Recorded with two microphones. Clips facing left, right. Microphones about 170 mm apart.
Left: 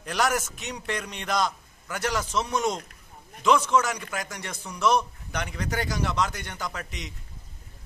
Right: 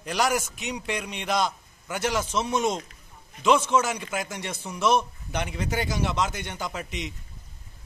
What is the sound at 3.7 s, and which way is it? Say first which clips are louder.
A man's voice: even; 25° right (ahead or behind).